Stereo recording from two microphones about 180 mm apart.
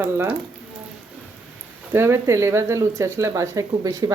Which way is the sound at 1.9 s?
15° right (ahead or behind).